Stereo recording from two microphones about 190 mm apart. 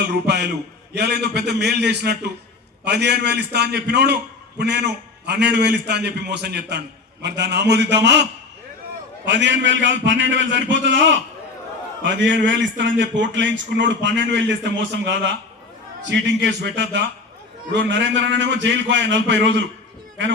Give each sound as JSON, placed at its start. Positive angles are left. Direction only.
{"t": 0.1, "sound": "a man's voice", "side_deg": -60}
{"t": 9.2, "sound": "a man's voice", "side_deg": -70}
{"t": 12.0, "sound": "a man's voice", "side_deg": -70}